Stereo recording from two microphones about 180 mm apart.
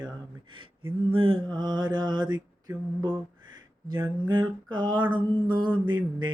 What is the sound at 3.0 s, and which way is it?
Mantra, 25° right (ahead or behind).